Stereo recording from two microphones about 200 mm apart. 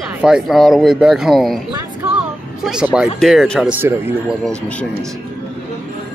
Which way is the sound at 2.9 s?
Centre (ahead or behind).